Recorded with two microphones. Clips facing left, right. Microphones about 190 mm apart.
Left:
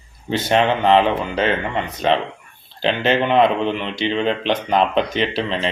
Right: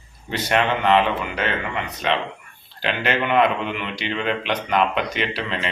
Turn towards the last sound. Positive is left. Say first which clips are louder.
# left 5 dB
turn(degrees=30)  # may be behind; listen again after turning